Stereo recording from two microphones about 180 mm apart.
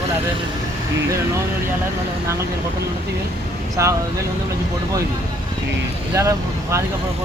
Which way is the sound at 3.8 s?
15° right (ahead or behind).